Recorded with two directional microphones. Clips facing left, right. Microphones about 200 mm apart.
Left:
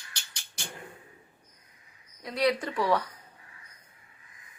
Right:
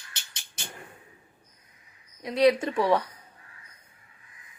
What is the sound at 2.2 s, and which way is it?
Speech, 25° right (ahead or behind).